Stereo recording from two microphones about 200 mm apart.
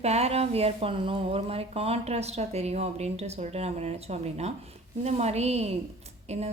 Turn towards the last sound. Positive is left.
turn(degrees=-35)  # may be behind; listen again after turning